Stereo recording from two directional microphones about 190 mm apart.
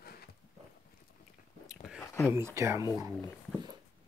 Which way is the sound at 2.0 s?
15° left (ahead or behind).